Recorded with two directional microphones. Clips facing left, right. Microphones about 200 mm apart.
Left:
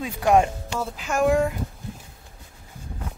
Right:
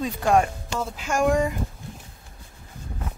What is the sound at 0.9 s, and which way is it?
Speech, centre (ahead or behind).